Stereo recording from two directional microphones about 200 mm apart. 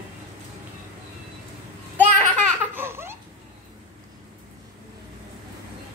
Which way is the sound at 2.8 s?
10° right (ahead or behind).